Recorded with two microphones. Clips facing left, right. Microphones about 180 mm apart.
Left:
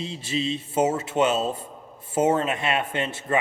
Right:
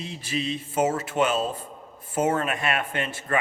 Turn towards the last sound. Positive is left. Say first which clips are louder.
# left 2 dB
turn(degrees=25)  # may be behind; listen again after turning